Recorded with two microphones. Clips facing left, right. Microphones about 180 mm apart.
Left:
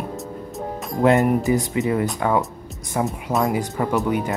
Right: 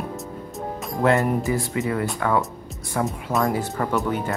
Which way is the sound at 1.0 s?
20° left (ahead or behind).